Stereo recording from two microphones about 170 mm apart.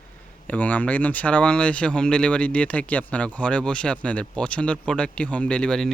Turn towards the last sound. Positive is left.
turn(degrees=5)  # may be behind; listen again after turning